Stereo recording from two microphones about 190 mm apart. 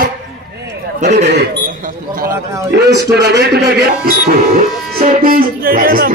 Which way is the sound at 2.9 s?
60° right (ahead or behind).